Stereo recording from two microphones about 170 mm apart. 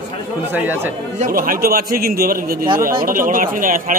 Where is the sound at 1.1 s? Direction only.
50° right (ahead or behind).